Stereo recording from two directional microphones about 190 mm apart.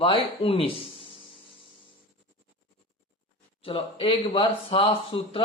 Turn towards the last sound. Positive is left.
turn(degrees=30)  # may be behind; listen again after turning